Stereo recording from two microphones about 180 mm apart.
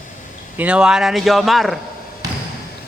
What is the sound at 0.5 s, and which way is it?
A man's voice, 5° right (ahead or behind).